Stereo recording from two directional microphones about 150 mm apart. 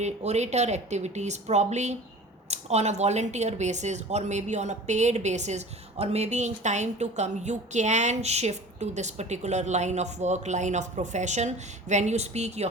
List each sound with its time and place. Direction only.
0.0 s speech: 50° right (ahead or behind)